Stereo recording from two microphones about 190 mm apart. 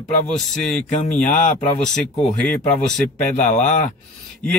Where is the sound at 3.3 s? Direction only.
40° left (ahead or behind).